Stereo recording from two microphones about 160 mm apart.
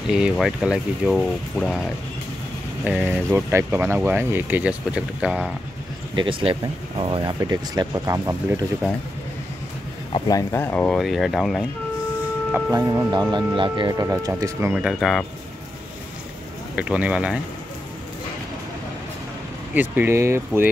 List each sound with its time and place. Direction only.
0.1 s speech: 5° right (ahead or behind)
3.1 s speech: 15° right (ahead or behind)
6.1 s speech: 35° right (ahead or behind)
10.1 s speech: 25° left (ahead or behind)
11.0 s speech: centre (ahead or behind)
12.7 s speech: 25° right (ahead or behind)
14.7 s speech: 5° right (ahead or behind)
16.7 s speech: 10° right (ahead or behind)
19.7 s speech: 10° right (ahead or behind)